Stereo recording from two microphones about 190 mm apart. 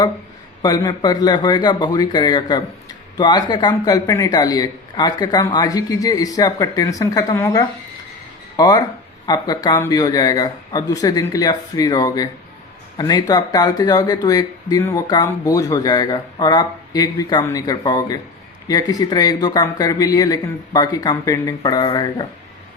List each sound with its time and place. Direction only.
0.6 s speech: 20° left (ahead or behind)